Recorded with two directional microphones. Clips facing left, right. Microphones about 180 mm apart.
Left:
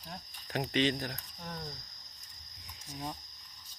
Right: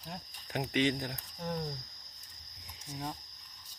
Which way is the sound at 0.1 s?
5° right (ahead or behind).